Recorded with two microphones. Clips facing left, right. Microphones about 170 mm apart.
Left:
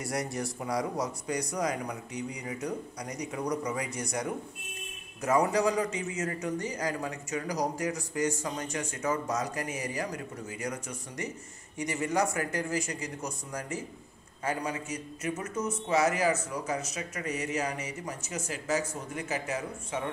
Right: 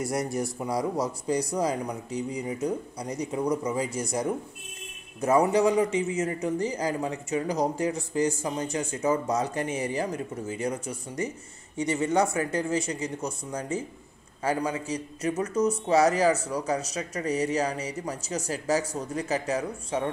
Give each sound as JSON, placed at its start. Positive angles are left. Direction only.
{"t": 0.0, "sound": "a man's voice", "side_deg": -25}